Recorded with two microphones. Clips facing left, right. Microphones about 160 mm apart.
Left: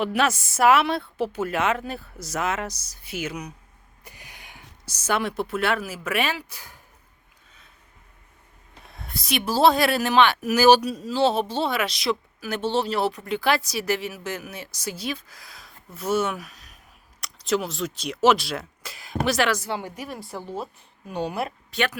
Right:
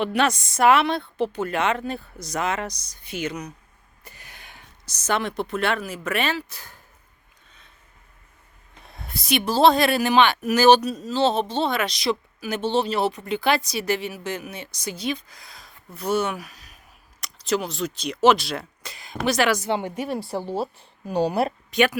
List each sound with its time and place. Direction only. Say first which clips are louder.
0.0 s speech: right 1 dB; 5° left (ahead or behind)
4.0 s a sound: even; 15° left (ahead or behind)
6.1 s speech: right 1 dB; 10° left (ahead or behind)
8.8 s speech: right 1 dB; centre (ahead or behind)
19.5 s a woman's voice: right 4 dB; 20° right (ahead or behind); by 21.5 s 35° right (ahead or behind)
21.7 s speech: right 6 dB; 15° right (ahead or behind)